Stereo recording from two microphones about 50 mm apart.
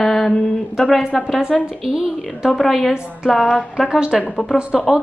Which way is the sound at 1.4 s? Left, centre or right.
Centre.